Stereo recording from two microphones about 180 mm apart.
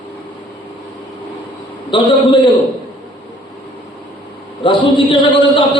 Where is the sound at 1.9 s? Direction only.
30° left (ahead or behind).